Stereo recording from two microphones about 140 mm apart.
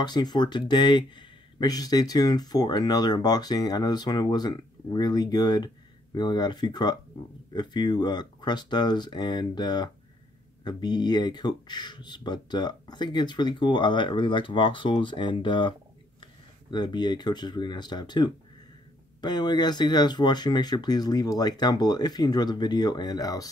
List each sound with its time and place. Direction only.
0.0 s speech: 30° left (ahead or behind)
16.7 s speech: 30° left (ahead or behind)